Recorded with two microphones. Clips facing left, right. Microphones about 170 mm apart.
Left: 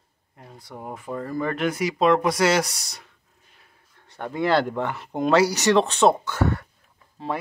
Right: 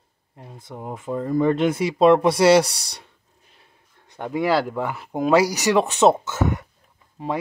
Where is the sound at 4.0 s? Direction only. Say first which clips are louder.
Right 2 dB; 15° right (ahead or behind).